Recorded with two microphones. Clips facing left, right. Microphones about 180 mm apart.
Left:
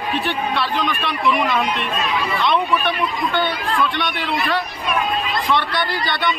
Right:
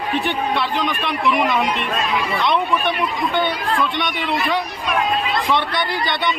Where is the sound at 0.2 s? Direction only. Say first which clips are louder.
Right 1 dB; 20° right (ahead or behind).